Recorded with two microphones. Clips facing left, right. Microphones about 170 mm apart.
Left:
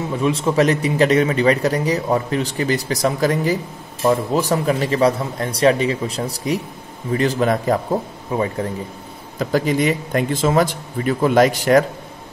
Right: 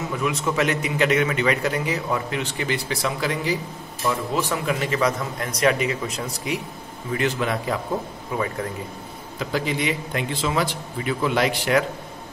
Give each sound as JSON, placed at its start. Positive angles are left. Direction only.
{"t": 0.1, "sound": "a man's voice", "side_deg": 30}
{"t": 8.3, "sound": "a man's voice", "side_deg": 30}
{"t": 9.4, "sound": "a man's voice", "side_deg": 45}